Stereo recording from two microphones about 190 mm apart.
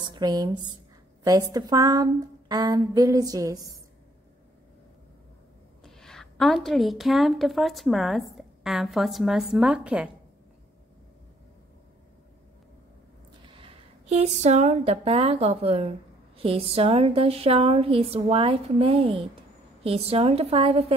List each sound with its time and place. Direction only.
0.0 s a woman's voice: 20° right (ahead or behind)
5.9 s a woman's voice: centre (ahead or behind)
13.4 s a woman's voice: 25° right (ahead or behind)